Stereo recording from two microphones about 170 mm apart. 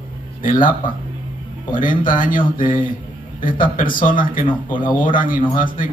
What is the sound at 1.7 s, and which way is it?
A man's voice, 50° left (ahead or behind).